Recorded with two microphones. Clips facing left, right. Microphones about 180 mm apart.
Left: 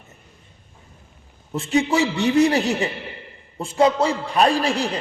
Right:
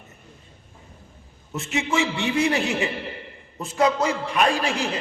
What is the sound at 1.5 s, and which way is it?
A man's voice, 35° left (ahead or behind).